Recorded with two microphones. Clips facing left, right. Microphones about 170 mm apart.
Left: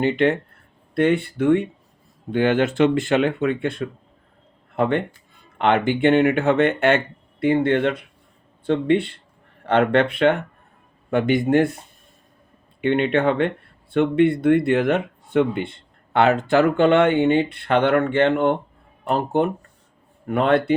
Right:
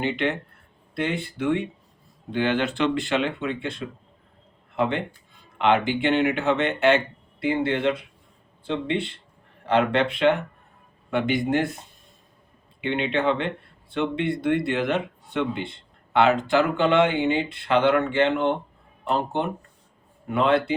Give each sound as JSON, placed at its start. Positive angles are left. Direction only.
{"t": 0.0, "sound": "speech", "side_deg": 45}
{"t": 0.9, "sound": "speech", "side_deg": 55}
{"t": 5.5, "sound": "speech", "side_deg": 50}
{"t": 12.8, "sound": "speech", "side_deg": 50}